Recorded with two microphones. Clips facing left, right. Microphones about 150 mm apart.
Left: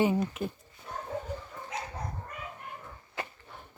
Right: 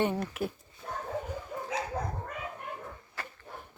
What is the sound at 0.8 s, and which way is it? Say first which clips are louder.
Bow-wow: right 2 dB; 50° right (ahead or behind).